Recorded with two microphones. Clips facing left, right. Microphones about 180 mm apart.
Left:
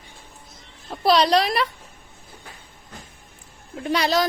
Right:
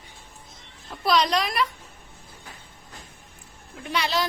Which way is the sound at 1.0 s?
30° left (ahead or behind).